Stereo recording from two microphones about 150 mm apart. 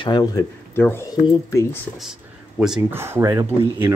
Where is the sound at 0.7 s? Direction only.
15° left (ahead or behind).